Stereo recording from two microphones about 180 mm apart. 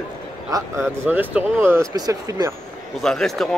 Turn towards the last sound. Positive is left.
turn(degrees=0)  # may be behind; listen again after turning